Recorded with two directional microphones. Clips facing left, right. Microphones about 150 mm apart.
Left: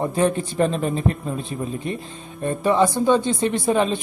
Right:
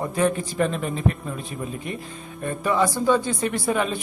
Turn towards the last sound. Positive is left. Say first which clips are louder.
# left 4 dB
turn(degrees=25)  # may be behind; listen again after turning